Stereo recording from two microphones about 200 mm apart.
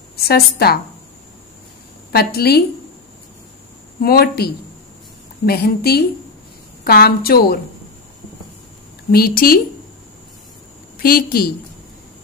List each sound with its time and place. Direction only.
0.1 s a woman's voice: 50° left (ahead or behind)
2.1 s a woman's voice: 50° left (ahead or behind)
4.0 s a woman's voice: 50° left (ahead or behind)
9.1 s a woman's voice: 50° left (ahead or behind)
11.0 s a woman's voice: 45° left (ahead or behind)